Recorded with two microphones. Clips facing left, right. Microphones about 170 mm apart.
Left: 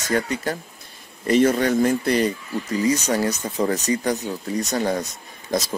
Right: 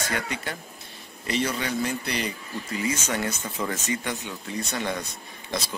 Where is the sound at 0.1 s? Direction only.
40° left (ahead or behind).